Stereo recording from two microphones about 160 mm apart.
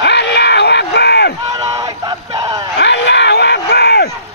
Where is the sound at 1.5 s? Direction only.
25° right (ahead or behind).